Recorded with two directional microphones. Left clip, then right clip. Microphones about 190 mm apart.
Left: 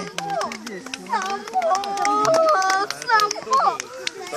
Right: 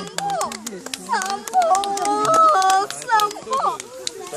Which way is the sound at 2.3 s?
40° right (ahead or behind).